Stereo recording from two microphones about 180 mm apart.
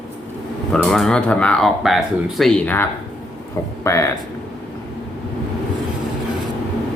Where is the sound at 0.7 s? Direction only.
5° left (ahead or behind).